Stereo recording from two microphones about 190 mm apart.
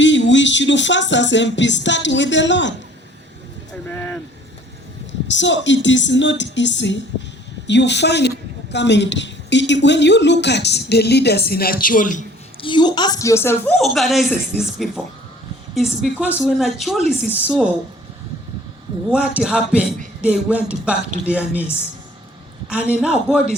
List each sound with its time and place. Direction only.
0.0 s music: 75° left (ahead or behind)
3.7 s a sound: 5° left (ahead or behind)
5.3 s a woman's voice: 70° left (ahead or behind); by 12.2 s 45° left (ahead or behind)
12.6 s a woman's voice: 25° left (ahead or behind)
13.7 s a man's voice: centre (ahead or behind)
19.1 s a man's voice: 5° right (ahead or behind)
22.7 s a man's voice: 5° right (ahead or behind)